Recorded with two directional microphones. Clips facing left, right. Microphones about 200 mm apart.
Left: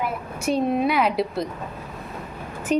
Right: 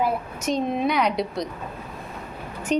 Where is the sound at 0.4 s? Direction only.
5° left (ahead or behind).